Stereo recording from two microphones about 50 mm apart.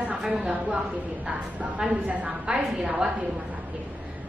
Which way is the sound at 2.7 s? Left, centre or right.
Centre.